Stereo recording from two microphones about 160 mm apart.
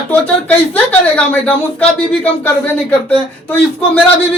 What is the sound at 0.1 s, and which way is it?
A woman's voice, 10° left (ahead or behind).